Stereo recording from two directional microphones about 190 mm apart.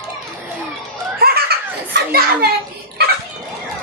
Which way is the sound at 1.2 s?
55° right (ahead or behind).